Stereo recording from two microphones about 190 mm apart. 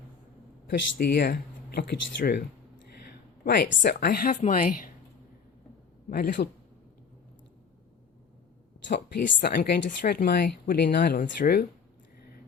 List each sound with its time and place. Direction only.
0.7 s speech: 60° left (ahead or behind)
3.1 s a sound: 60° left (ahead or behind)
3.8 s speech: 55° left (ahead or behind)
6.1 s speech: 50° left (ahead or behind)
8.9 s speech: 65° left (ahead or behind)